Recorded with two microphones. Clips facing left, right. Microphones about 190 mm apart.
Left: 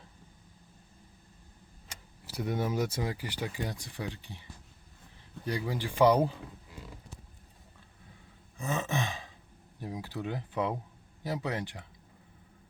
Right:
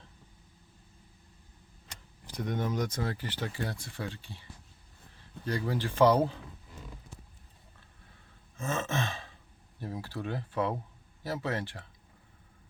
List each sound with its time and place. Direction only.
2.2 s speech: 5° left (ahead or behind)
5.5 s speech: 15° left (ahead or behind)
8.5 s gasp: 15° left (ahead or behind)
9.8 s speech: 15° left (ahead or behind)